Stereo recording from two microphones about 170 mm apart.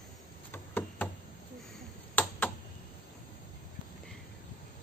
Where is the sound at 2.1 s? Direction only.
10° left (ahead or behind).